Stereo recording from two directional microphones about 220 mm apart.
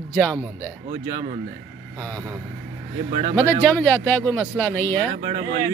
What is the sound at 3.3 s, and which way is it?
Speech, 5° left (ahead or behind).